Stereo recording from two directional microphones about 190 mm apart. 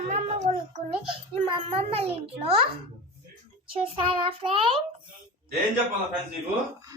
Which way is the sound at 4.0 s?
30° right (ahead or behind).